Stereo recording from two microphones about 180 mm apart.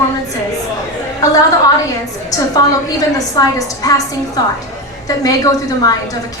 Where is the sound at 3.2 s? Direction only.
20° left (ahead or behind).